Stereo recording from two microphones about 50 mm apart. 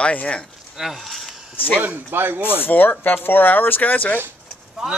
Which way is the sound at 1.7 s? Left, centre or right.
Right.